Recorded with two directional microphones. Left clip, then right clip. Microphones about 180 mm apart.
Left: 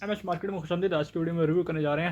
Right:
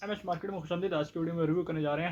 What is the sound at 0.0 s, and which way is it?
Speech, 55° left (ahead or behind).